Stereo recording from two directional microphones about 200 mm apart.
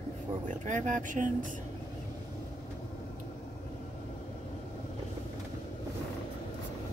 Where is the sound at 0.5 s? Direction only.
40° right (ahead or behind).